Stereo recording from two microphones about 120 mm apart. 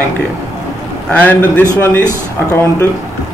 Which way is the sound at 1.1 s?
15° left (ahead or behind).